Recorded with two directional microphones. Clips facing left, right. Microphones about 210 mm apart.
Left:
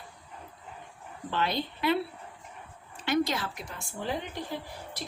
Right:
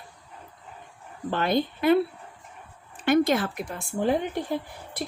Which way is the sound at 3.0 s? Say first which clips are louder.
Right 7 dB; 55° right (ahead or behind).